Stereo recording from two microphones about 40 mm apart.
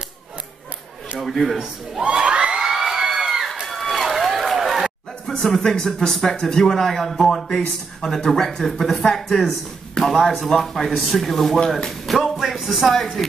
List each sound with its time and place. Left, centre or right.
1.2 s speech: centre
2.0 s crowd: right
2.6 s crowd: centre
3.6 s run: centre
5.2 s a sound: centre
5.6 s speech: centre
7.4 s speech: centre
8.3 s speech: centre
12.1 s music: centre
12.5 s speech: centre
12.8 s speech: centre